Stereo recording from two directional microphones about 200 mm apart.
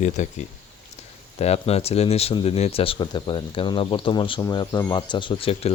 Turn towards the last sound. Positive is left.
turn(degrees=25)  # may be behind; listen again after turning